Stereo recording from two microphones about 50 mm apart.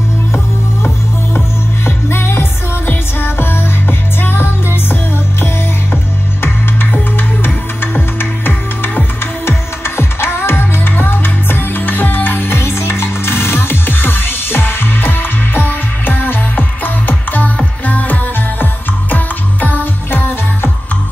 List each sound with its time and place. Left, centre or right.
1.9 s music: left
6.9 s music: left